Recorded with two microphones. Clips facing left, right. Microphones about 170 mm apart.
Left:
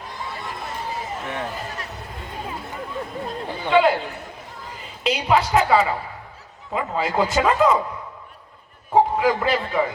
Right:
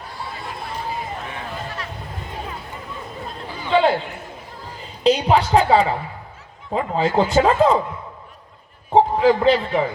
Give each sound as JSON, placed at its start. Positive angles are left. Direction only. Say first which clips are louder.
{"t": 1.3, "sound": "a sound", "louder": "left 2 dB", "side_deg": 45}
{"t": 3.7, "sound": "chatter", "louder": "even", "side_deg": -30}
{"t": 5.0, "sound": "speech", "louder": "right 4 dB", "side_deg": -35}
{"t": 8.9, "sound": "a man's voice", "louder": "right 3 dB", "side_deg": -25}